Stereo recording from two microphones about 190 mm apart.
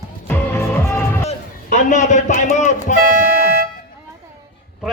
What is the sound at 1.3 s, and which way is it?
A man's voice, 40° left (ahead or behind).